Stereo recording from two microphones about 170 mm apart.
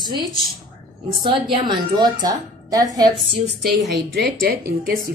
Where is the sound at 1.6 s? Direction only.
25° right (ahead or behind).